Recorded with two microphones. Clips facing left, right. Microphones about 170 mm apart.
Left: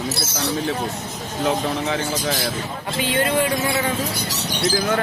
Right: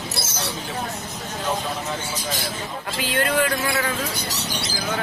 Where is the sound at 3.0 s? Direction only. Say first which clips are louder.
Left 2 dB; 25° left (ahead or behind).